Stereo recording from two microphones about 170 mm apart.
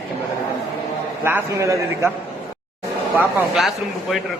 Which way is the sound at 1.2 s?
15° right (ahead or behind).